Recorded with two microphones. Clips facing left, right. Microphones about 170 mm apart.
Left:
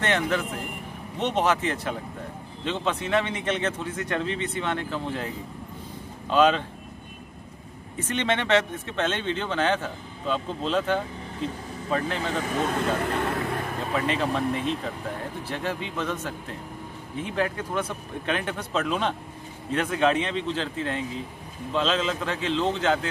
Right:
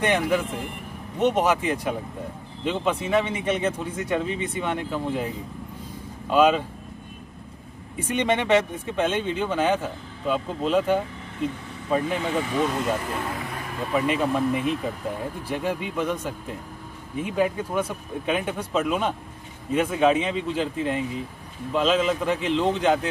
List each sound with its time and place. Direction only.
0.0 s speech: 10° right (ahead or behind)
8.0 s speech: 10° right (ahead or behind)
13.1 s vehicle: 70° left (ahead or behind)
13.9 s speech: 10° right (ahead or behind)